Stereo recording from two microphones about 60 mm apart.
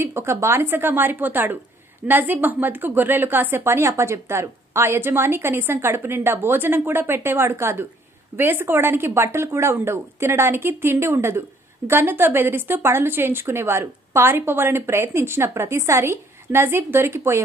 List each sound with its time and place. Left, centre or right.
0.0 s a woman's voice: right